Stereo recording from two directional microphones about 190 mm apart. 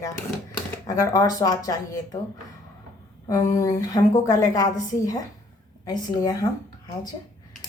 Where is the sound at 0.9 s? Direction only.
15° left (ahead or behind).